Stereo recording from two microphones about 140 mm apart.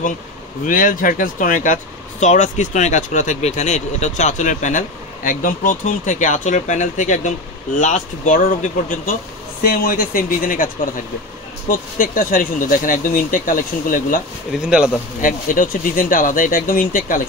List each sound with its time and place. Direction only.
0.7 s speech: 75° left (ahead or behind)
9.6 s speech: 90° left
11.7 s speech: 80° left
14.5 s speech: 5° right (ahead or behind)
15.2 s speech: 70° left (ahead or behind)